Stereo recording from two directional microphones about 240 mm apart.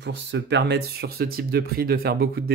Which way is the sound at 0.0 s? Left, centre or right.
Right.